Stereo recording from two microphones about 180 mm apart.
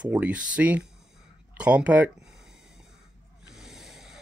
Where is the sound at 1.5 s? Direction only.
5° right (ahead or behind).